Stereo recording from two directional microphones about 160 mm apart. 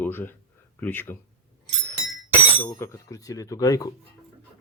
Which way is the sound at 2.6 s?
15° left (ahead or behind).